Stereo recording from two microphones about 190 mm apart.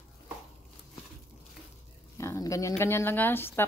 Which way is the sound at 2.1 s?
15° left (ahead or behind).